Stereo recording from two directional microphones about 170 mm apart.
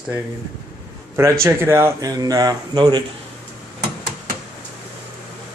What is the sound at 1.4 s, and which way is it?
Speech, 15° right (ahead or behind).